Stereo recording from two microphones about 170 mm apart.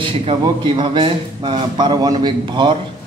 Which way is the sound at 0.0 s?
30° right (ahead or behind).